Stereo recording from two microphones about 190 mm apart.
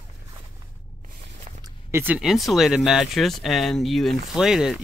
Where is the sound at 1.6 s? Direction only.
15° right (ahead or behind).